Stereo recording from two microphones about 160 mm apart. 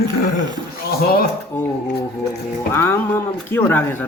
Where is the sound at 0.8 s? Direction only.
75° left (ahead or behind).